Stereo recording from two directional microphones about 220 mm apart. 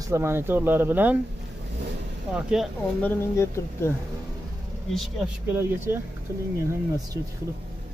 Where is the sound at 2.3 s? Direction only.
5° right (ahead or behind).